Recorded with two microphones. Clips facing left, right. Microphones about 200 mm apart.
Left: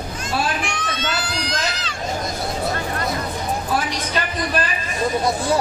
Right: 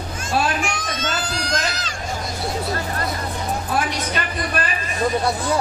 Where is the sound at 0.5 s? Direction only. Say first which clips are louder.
Right 1 dB; 45° right (ahead or behind).